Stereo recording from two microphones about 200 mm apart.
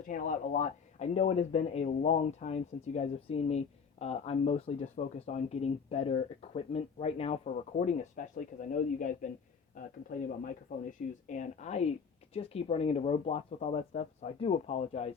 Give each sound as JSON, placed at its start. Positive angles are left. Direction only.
{"t": 0.1, "sound": "speech", "side_deg": 40}
{"t": 11.3, "sound": "speech", "side_deg": 35}